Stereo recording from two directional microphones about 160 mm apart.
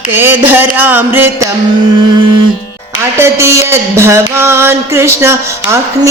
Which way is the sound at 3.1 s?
15° right (ahead or behind).